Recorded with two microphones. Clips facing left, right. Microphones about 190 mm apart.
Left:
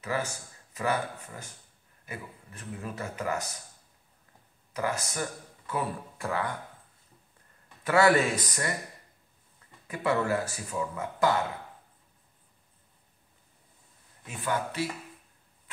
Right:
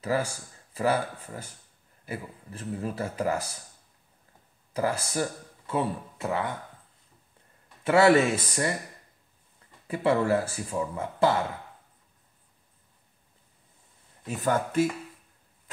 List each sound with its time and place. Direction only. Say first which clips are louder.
0.0 s speech: right 4 dB; 35° right (ahead or behind)
4.7 s speech: right 4 dB; 30° right (ahead or behind)
7.8 s speech: right 3 dB; 25° right (ahead or behind)
9.8 s speech: right 4 dB; 30° right (ahead or behind)
14.2 s speech: right 5 dB; 40° right (ahead or behind)